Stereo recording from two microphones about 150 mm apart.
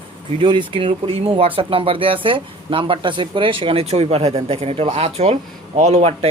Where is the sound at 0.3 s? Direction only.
35° right (ahead or behind).